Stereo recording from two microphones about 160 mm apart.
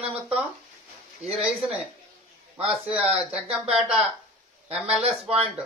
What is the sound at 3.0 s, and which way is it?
Speech, 40° right (ahead or behind).